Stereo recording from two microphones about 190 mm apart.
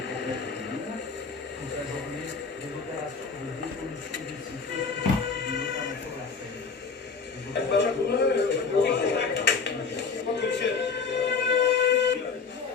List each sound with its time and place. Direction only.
7.5 s music: 65° left (ahead or behind)